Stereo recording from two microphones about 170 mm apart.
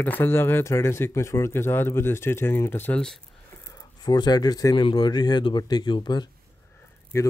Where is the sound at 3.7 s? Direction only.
25° left (ahead or behind).